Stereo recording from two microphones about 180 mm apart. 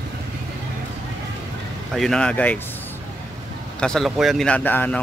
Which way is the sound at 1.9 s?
Centre (ahead or behind).